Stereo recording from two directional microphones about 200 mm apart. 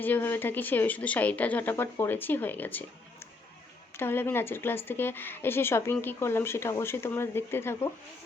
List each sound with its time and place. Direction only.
0.0 s a woman's voice: 10° left (ahead or behind)